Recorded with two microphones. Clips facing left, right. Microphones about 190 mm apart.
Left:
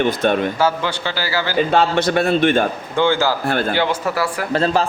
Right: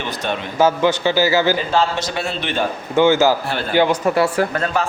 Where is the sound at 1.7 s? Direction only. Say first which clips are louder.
Left 3 dB; 60° left (ahead or behind).